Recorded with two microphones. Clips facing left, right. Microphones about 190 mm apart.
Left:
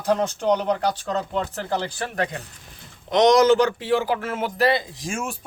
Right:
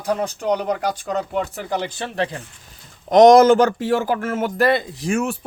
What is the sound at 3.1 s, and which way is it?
Speech, 50° right (ahead or behind).